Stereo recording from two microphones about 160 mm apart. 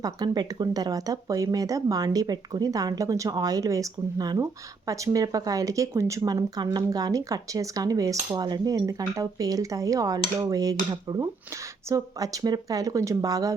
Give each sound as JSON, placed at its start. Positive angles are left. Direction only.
{"t": 0.0, "sound": "speech", "side_deg": -25}